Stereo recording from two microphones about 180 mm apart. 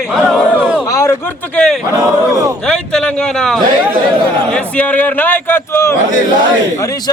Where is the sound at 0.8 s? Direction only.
15° left (ahead or behind).